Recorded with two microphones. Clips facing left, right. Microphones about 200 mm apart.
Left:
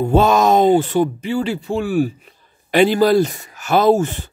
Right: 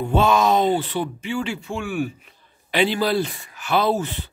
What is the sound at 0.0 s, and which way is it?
Speech, 40° left (ahead or behind).